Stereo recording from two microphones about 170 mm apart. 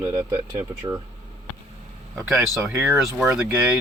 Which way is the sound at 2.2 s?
Centre (ahead or behind).